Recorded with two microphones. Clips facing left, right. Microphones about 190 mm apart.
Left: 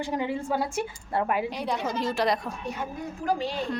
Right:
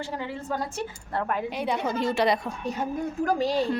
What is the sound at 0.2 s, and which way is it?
Speech, 10° left (ahead or behind).